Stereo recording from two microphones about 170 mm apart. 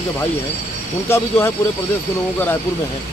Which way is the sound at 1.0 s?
15° left (ahead or behind).